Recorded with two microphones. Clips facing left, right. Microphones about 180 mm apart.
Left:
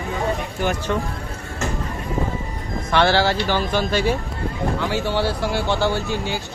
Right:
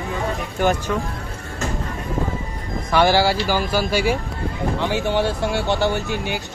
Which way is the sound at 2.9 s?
10° right (ahead or behind).